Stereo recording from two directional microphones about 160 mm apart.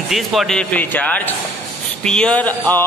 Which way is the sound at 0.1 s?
Centre (ahead or behind).